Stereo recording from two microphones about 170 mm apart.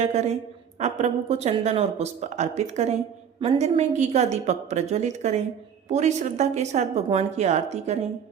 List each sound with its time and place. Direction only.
0.0 s speech: 40° right (ahead or behind)